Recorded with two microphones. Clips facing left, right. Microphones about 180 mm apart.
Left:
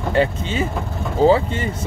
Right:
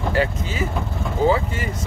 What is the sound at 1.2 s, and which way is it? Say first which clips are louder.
Speech: left 5 dB; 30° left (ahead or behind).